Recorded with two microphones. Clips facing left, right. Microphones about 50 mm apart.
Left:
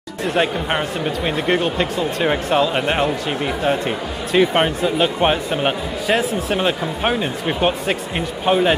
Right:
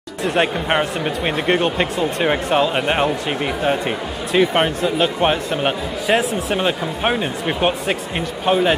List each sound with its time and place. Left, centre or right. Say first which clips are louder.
0.4 s speech: right 2 dB; centre
2.2 s speech: even; centre